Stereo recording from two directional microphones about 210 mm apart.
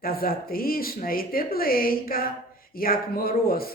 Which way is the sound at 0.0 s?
45° left (ahead or behind).